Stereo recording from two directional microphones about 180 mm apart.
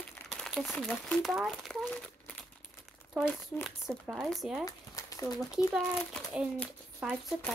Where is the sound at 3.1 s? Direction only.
5° right (ahead or behind).